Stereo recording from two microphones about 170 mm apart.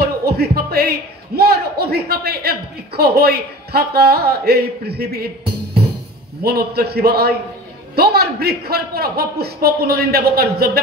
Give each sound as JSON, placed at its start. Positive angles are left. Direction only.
{"t": 0.0, "sound": "a man's voice", "side_deg": -70}